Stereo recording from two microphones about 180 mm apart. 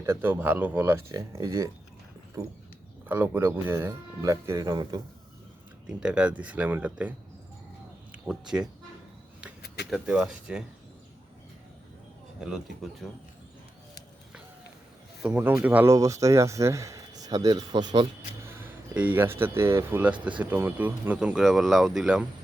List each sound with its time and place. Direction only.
0.0 s speech: 15° right (ahead or behind)
6.0 s speech: 5° right (ahead or behind)
8.3 s speech: 5° right (ahead or behind)
9.6 s a sound: 65° left (ahead or behind)
9.9 s speech: centre (ahead or behind)
13.0 s speech: 5° left (ahead or behind)
15.2 s speech: 10° right (ahead or behind)
18.6 s speech: 10° right (ahead or behind)